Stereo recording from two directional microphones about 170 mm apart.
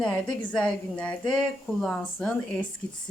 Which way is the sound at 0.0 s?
5° left (ahead or behind).